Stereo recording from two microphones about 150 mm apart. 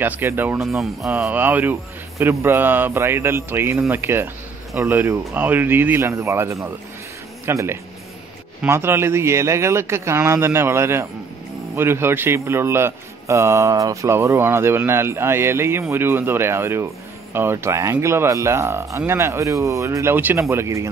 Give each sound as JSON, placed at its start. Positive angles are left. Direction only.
{"t": 0.0, "sound": "a man's voice", "side_deg": -15}
{"t": 0.6, "sound": "a man's voice", "side_deg": 0}